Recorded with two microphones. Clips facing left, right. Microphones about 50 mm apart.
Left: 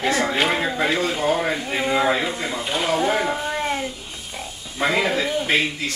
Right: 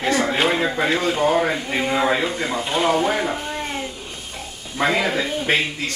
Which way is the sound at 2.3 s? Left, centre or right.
Right.